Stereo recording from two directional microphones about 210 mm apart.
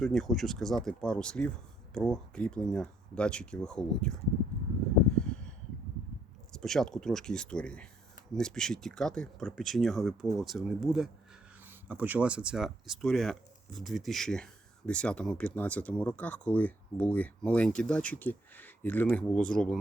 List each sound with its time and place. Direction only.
0.0 s speech: centre (ahead or behind)
5.1 s a sound: 5° left (ahead or behind)
6.5 s speech: centre (ahead or behind)